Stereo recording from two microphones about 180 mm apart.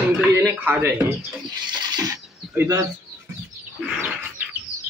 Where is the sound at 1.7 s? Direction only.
25° right (ahead or behind).